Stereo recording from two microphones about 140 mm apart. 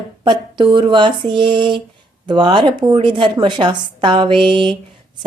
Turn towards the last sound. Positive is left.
turn(degrees=-35)  # may be behind; listen again after turning